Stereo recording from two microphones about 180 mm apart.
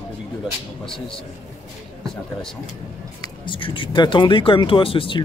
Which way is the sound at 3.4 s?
30° left (ahead or behind).